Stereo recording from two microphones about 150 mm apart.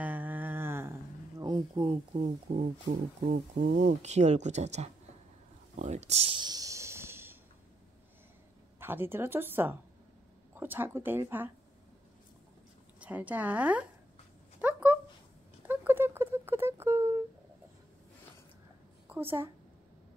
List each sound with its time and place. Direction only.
0.0 s a sound: 10° right (ahead or behind)
1.4 s speech: 30° right (ahead or behind)
3.3 s speech: 90° right
3.7 s speech: 50° right (ahead or behind)
6.3 s a sound: 25° right (ahead or behind)
8.7 s speech: 15° right (ahead or behind)
13.0 s speech: 10° right (ahead or behind)
14.6 s a sound: 10° right (ahead or behind)
15.6 s rodents: 10° right (ahead or behind)
19.0 s a woman's voice: 15° right (ahead or behind)